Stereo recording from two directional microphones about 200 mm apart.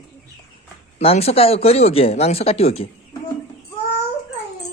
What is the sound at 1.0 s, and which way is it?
Speech, 30° left (ahead or behind).